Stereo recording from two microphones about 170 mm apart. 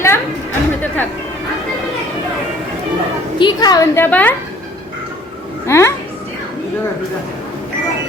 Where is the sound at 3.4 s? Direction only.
25° left (ahead or behind); by 4.3 s 10° left (ahead or behind).